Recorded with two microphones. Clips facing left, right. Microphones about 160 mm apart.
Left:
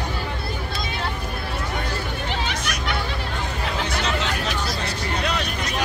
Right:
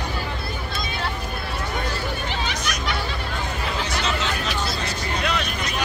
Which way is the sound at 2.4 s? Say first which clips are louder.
Even; 55° left (ahead or behind).